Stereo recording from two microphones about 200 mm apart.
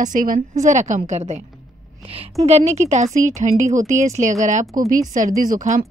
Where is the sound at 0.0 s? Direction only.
40° right (ahead or behind).